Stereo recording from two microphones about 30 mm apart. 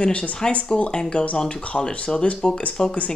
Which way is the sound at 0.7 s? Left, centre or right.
Left.